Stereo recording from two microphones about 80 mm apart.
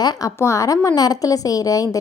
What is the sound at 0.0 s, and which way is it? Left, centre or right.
Speech, left.